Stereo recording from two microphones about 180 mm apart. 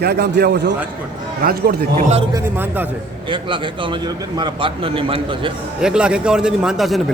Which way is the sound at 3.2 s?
25° right (ahead or behind).